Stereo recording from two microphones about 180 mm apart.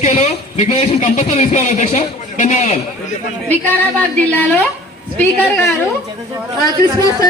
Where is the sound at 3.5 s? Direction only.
10° left (ahead or behind).